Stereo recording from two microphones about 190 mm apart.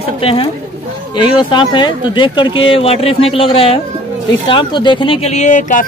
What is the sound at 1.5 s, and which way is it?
Speech, 25° left (ahead or behind).